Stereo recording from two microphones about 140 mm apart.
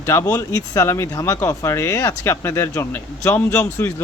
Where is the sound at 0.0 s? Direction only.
20° left (ahead or behind).